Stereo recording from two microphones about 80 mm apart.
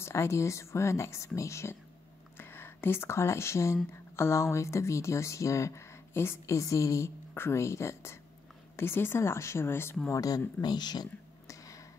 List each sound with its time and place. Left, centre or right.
0.0 s speech: left
10.0 s speech: left
10.6 s speech: left
11.4 s a sound: left